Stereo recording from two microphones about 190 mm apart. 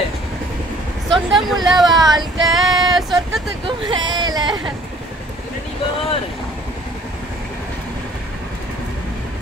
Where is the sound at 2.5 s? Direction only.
Centre (ahead or behind).